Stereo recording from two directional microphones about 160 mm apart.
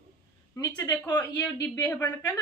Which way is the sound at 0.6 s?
25° left (ahead or behind).